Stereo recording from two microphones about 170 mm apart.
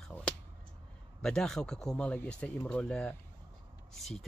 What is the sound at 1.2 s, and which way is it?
Speech, 5° left (ahead or behind).